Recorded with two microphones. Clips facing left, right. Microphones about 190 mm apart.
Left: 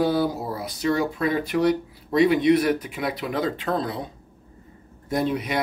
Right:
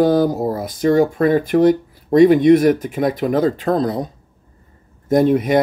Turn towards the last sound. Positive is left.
turn(degrees=-50)  # may be behind; listen again after turning